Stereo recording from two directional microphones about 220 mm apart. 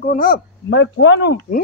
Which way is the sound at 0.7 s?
55° left (ahead or behind).